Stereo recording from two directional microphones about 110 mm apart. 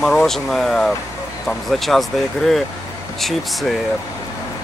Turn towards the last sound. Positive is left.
turn(degrees=0)  # may be behind; listen again after turning